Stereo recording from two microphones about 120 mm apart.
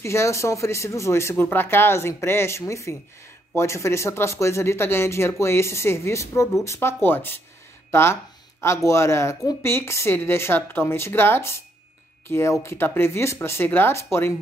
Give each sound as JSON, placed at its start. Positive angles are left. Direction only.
{"t": 0.0, "sound": "speech", "side_deg": 25}